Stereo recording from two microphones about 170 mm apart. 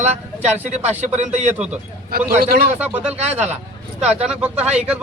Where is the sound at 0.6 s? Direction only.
40° right (ahead or behind).